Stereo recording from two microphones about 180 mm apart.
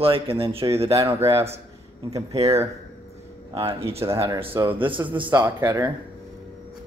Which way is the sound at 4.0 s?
15° right (ahead or behind).